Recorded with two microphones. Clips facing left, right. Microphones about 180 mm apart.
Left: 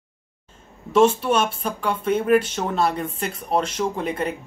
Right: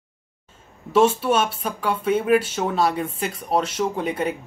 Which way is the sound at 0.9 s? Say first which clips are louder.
Left 1 dB; 5° right (ahead or behind).